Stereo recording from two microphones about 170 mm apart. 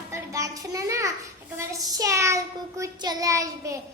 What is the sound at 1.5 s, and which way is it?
Child singing, 20° right (ahead or behind).